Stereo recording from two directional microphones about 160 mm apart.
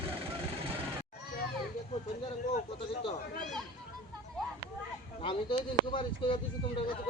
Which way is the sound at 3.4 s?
Centre (ahead or behind).